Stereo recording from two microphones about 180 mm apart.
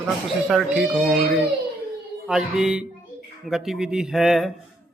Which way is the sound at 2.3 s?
5° right (ahead or behind).